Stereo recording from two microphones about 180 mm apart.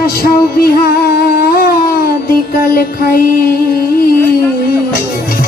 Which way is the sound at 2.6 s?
55° left (ahead or behind).